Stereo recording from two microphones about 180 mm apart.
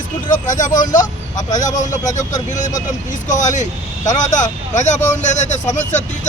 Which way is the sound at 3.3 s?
45° left (ahead or behind).